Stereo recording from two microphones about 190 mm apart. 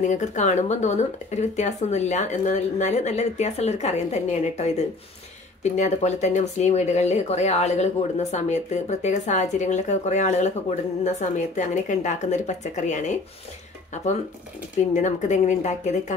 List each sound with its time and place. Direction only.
0.0 s speech: 40° left (ahead or behind)
15.0 s speech: 40° left (ahead or behind)